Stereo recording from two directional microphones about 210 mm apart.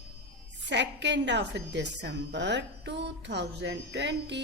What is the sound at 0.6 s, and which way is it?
A woman's voice, 55° right (ahead or behind).